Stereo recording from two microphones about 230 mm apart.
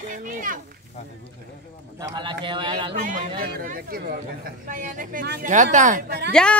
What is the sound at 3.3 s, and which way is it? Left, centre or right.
Speech, right.